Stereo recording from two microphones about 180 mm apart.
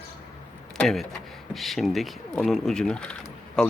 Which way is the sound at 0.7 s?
Centre (ahead or behind).